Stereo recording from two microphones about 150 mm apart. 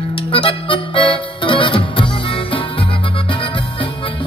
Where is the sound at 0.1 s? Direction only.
35° left (ahead or behind).